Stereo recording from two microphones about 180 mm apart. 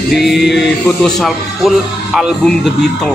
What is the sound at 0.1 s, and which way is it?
Speech, centre (ahead or behind).